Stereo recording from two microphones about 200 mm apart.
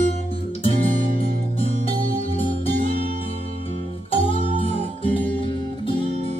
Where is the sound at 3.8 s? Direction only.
30° left (ahead or behind).